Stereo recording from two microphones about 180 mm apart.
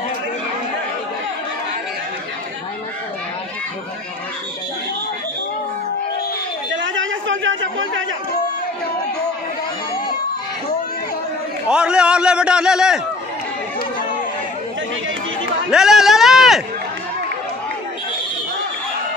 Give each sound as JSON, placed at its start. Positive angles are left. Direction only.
{"t": 6.7, "sound": "chatter", "side_deg": -90}
{"t": 11.7, "sound": "a man's voice", "side_deg": -5}
{"t": 15.7, "sound": "a sound", "side_deg": -5}